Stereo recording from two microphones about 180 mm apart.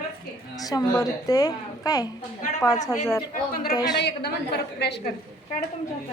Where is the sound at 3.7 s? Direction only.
20° left (ahead or behind).